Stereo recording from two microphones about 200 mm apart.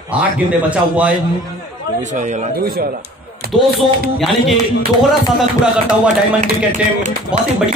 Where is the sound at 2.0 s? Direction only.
35° right (ahead or behind).